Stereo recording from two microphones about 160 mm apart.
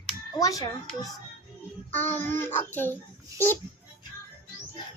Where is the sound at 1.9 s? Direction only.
10° left (ahead or behind).